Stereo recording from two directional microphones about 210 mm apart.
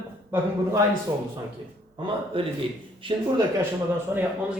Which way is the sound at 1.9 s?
25° right (ahead or behind).